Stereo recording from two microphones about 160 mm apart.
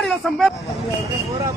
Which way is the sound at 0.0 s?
Centre (ahead or behind).